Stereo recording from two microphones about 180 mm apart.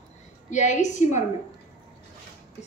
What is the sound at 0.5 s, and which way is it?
Speech, 40° left (ahead or behind).